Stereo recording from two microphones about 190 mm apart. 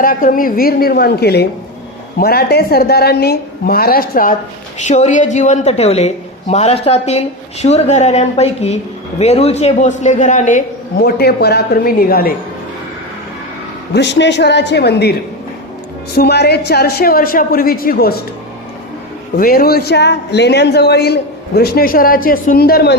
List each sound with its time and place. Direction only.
0.0 s a man's voice: 45° left (ahead or behind)
4.9 s a woman's voice: 40° left (ahead or behind)
10.9 s speech: 55° left (ahead or behind)
13.9 s a man's voice: 65° left (ahead or behind)
16.1 s speech: 60° left (ahead or behind)
19.4 s a man's voice: 50° left (ahead or behind)